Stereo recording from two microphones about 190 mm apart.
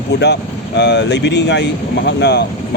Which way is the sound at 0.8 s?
65° left (ahead or behind).